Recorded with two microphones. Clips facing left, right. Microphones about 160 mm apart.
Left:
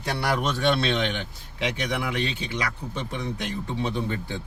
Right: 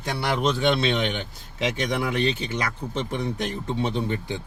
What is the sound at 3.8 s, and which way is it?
Speech, 20° right (ahead or behind).